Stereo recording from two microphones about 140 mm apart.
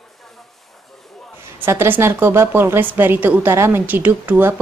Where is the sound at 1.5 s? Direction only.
15° right (ahead or behind).